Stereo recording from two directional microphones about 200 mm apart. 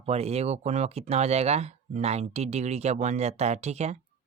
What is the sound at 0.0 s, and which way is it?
Speech, 30° right (ahead or behind).